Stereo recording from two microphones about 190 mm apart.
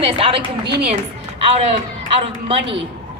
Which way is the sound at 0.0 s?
30° right (ahead or behind).